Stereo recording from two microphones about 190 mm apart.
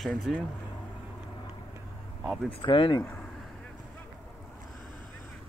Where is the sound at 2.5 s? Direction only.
25° left (ahead or behind).